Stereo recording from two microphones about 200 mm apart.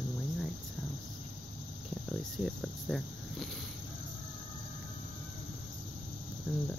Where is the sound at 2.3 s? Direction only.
Centre (ahead or behind).